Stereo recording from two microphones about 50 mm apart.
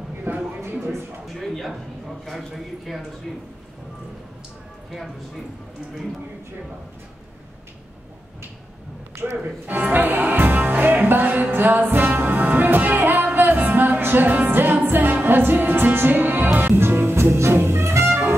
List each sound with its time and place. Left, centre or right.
0.3 s a sound: right
1.2 s a man's voice: centre
4.9 s a man's voice: centre
9.4 s speech: right
16.5 s music: right
16.8 s music: right